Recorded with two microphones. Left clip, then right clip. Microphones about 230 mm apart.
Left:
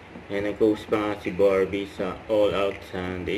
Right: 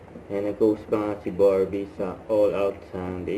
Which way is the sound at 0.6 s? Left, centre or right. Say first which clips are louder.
Even; left.